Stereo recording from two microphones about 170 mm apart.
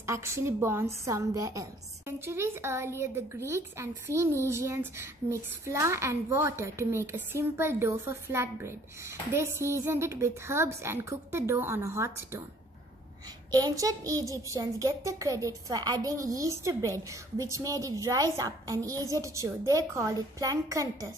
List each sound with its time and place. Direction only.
0.0 s a woman's voice: 15° right (ahead or behind)
13.5 s a child's voice: 20° right (ahead or behind)